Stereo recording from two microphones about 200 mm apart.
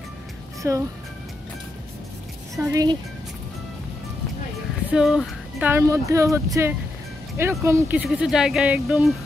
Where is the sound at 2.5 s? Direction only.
15° right (ahead or behind).